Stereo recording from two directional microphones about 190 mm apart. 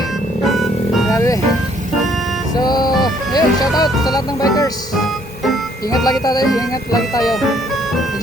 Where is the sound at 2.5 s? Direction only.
20° left (ahead or behind).